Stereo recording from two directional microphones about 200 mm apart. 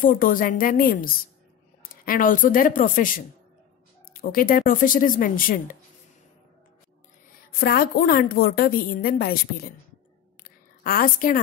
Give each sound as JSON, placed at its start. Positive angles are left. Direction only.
{"t": 0.0, "sound": "a woman's voice", "side_deg": 45}
{"t": 4.1, "sound": "a woman's voice", "side_deg": 45}
{"t": 7.6, "sound": "a woman's voice", "side_deg": 50}
{"t": 10.8, "sound": "a woman's voice", "side_deg": 45}